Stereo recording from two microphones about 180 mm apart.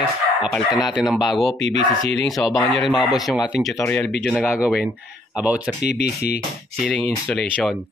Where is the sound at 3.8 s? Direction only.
10° left (ahead or behind).